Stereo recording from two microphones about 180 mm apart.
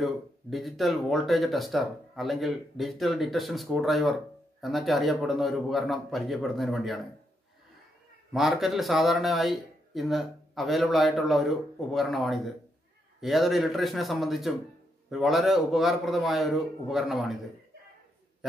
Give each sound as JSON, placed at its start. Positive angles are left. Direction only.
{"t": 0.0, "sound": "speech", "side_deg": 0}
{"t": 8.3, "sound": "speech", "side_deg": 0}